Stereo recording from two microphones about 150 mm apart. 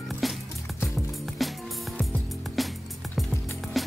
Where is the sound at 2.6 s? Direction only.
Centre (ahead or behind).